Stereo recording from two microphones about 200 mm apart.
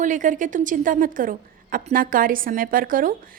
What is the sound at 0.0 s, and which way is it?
A woman's voice, 40° right (ahead or behind).